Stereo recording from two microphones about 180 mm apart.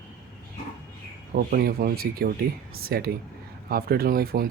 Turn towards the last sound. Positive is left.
turn(degrees=-55)  # may be behind; listen again after turning